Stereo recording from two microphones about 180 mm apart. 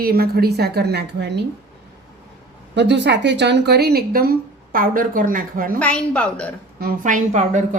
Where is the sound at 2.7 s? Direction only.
75° right (ahead or behind); by 5.8 s 50° right (ahead or behind).